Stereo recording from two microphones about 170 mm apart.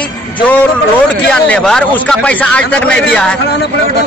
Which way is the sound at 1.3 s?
5° left (ahead or behind).